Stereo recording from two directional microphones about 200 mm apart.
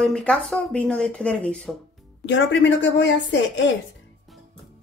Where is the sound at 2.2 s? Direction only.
65° left (ahead or behind).